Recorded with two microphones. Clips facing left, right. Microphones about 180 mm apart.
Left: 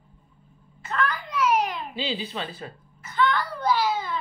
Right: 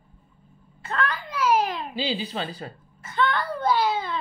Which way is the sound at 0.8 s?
30° right (ahead or behind).